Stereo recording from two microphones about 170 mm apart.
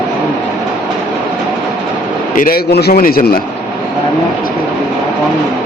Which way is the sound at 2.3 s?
60° left (ahead or behind).